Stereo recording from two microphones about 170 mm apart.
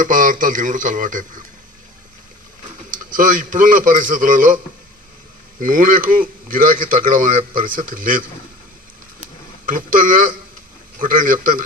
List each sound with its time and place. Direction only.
0.0 s speech: 50° right (ahead or behind)
2.9 s speech: 50° right (ahead or behind)
5.5 s speech: 55° right (ahead or behind)
9.6 s speech: 55° right (ahead or behind)